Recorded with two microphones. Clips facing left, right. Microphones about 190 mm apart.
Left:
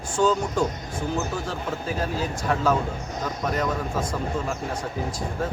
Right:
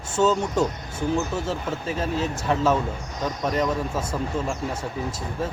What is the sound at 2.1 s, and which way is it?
Speech, 25° right (ahead or behind).